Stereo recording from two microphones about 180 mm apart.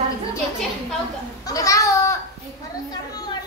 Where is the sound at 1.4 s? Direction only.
20° left (ahead or behind).